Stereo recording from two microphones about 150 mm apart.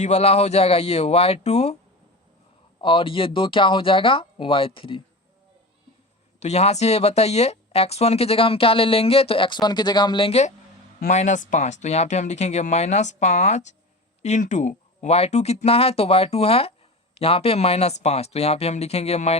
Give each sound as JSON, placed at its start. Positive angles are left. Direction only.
{"t": 0.0, "sound": "speech", "side_deg": 45}
{"t": 2.8, "sound": "speech", "side_deg": 35}
{"t": 6.4, "sound": "speech", "side_deg": 45}
{"t": 11.1, "sound": "speech", "side_deg": 50}